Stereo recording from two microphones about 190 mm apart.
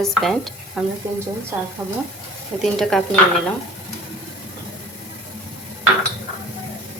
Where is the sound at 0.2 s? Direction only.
Centre (ahead or behind).